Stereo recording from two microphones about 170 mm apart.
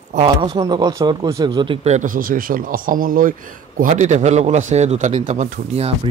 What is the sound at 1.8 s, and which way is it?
Speech, 50° right (ahead or behind).